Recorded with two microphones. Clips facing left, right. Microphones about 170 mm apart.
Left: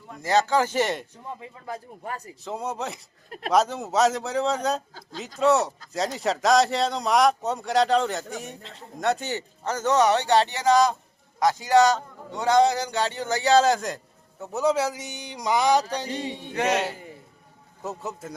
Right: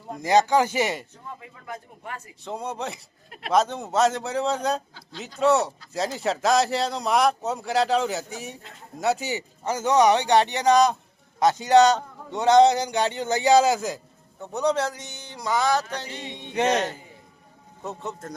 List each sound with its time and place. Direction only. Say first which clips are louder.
0.2 s a man's voice: right 2 dB; 15° right (ahead or behind)
1.4 s speech: left 2 dB; 30° left (ahead or behind)
2.4 s speech: even; centre (ahead or behind)
3.2 s speech: left 5 dB; 40° left (ahead or behind)
3.5 s a man's voice: even; centre (ahead or behind)
16.2 s a sound: left 5 dB; 10° left (ahead or behind)
17.8 s speech: even; 5° left (ahead or behind)